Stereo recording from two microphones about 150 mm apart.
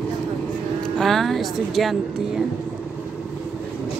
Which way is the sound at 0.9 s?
Centre (ahead or behind).